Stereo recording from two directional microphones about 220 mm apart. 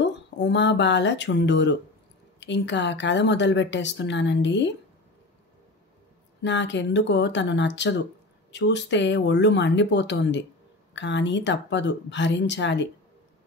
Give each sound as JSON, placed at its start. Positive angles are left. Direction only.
{"t": 0.0, "sound": "a woman's voice", "side_deg": 55}
{"t": 6.4, "sound": "a woman's voice", "side_deg": 55}